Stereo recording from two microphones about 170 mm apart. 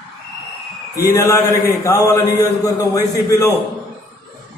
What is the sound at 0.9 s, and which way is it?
A man's voice, 20° left (ahead or behind).